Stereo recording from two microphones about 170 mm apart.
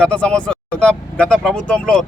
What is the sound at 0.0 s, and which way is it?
Speech, 5° left (ahead or behind).